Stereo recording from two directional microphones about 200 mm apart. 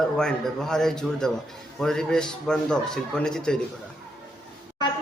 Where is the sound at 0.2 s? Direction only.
5° left (ahead or behind).